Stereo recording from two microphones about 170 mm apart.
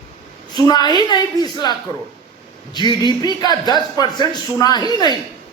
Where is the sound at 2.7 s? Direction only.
25° left (ahead or behind).